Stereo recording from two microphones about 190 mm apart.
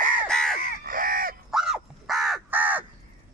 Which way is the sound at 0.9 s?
50° right (ahead or behind).